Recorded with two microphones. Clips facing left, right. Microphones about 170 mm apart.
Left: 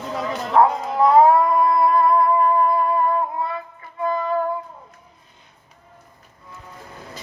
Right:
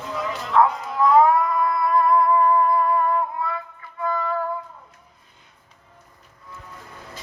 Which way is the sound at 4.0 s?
25° left (ahead or behind).